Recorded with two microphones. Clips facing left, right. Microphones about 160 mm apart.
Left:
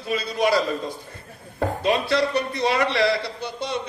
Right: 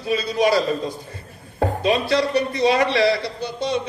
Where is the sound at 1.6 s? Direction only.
55° right (ahead or behind).